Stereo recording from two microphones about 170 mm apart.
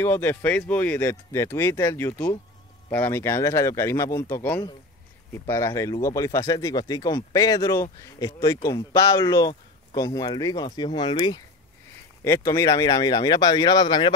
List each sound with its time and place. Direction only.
0.0 s speech: 15° left (ahead or behind)